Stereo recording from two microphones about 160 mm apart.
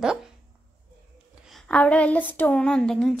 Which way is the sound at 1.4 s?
5° left (ahead or behind).